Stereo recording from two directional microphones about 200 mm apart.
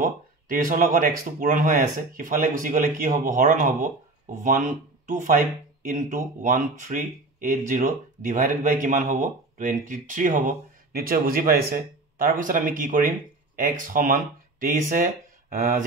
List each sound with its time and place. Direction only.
0.0 s speech: 40° right (ahead or behind)